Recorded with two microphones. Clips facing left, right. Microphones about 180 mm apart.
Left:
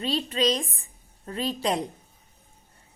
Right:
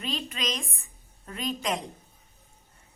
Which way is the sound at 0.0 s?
35° left (ahead or behind).